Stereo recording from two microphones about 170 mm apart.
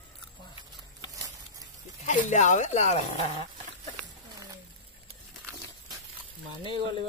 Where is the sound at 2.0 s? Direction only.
45° left (ahead or behind).